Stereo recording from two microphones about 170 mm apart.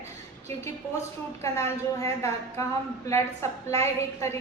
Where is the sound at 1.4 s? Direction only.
15° left (ahead or behind).